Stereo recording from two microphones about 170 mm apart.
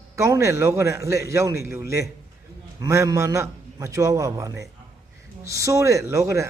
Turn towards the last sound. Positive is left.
turn(degrees=-20)  # may be behind; listen again after turning